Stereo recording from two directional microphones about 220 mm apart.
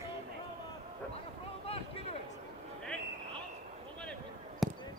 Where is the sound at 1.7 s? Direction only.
25° left (ahead or behind).